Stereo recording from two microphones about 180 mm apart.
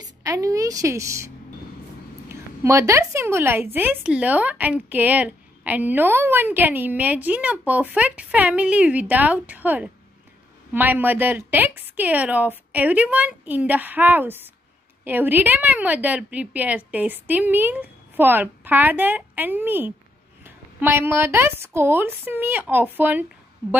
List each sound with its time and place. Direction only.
0.2 s a woman's voice: 20° right (ahead or behind)